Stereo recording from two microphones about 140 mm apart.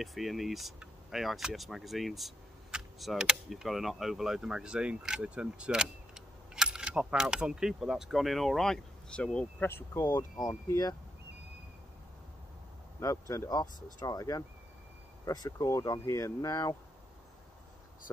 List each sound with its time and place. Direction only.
0.0 s speech: centre (ahead or behind); by 10.0 s 15° left (ahead or behind)
10.3 s speech: 25° left (ahead or behind)
13.0 s speech: 25° left (ahead or behind)